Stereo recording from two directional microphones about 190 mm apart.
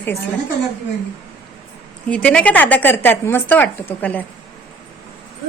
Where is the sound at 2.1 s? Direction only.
5° left (ahead or behind).